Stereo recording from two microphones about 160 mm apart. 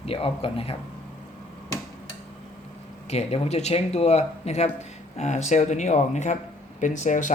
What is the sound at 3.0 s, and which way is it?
Speech, 40° left (ahead or behind).